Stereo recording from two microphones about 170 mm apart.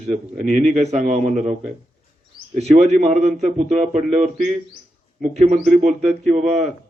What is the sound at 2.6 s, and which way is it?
Speech, 40° right (ahead or behind).